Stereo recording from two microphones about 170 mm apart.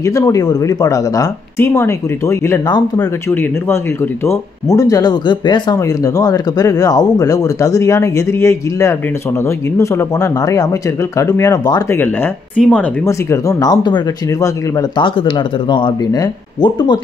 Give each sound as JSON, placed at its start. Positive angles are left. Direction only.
{"t": 0.0, "sound": "speech", "side_deg": 20}
{"t": 12.0, "sound": "a woman's voice", "side_deg": 10}